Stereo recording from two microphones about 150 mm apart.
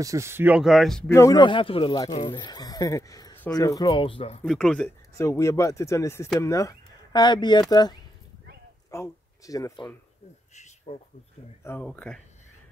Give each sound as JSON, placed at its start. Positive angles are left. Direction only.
{"t": 0.0, "sound": "speech", "side_deg": -20}
{"t": 1.0, "sound": "speech", "side_deg": 20}
{"t": 1.4, "sound": "speech", "side_deg": 35}
{"t": 4.5, "sound": "speech", "side_deg": 5}
{"t": 5.1, "sound": "speech", "side_deg": 20}
{"t": 10.5, "sound": "a sound", "side_deg": 50}
{"t": 11.6, "sound": "speech", "side_deg": 10}